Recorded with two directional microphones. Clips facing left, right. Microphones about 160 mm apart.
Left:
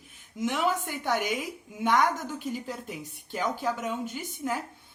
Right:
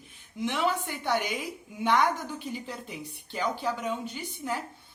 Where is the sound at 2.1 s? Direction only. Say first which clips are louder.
Left 2 dB; 45° left (ahead or behind).